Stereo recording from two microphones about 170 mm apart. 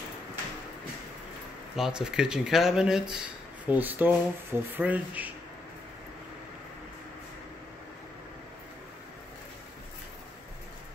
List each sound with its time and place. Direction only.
1.8 s speech: 5° right (ahead or behind)